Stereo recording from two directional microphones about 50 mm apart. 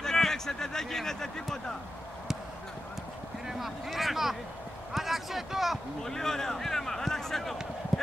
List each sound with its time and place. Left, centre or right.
0.0 s speech: centre
3.4 s speech: centre
6.0 s speech: centre